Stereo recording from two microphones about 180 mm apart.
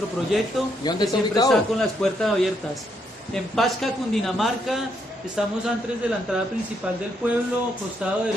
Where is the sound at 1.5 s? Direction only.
Centre (ahead or behind).